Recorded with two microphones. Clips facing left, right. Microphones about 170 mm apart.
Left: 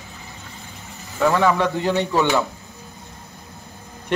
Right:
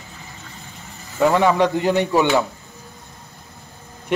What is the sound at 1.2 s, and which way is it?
Speech, 20° right (ahead or behind).